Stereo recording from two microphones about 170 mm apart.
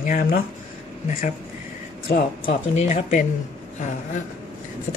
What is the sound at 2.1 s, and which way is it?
Speech, 45° left (ahead or behind).